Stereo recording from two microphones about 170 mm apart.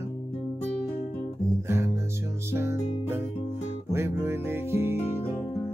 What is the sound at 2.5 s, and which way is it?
Music, 15° right (ahead or behind).